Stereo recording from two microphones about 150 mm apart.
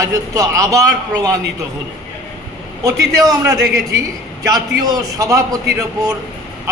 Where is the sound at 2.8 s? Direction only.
20° right (ahead or behind).